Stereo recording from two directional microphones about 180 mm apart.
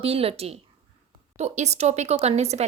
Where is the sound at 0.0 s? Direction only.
35° right (ahead or behind).